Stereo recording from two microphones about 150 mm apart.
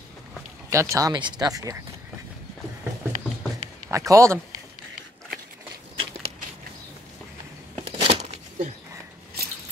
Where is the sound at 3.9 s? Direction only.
20° right (ahead or behind).